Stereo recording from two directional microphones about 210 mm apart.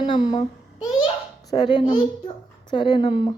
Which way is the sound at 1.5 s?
20° left (ahead or behind).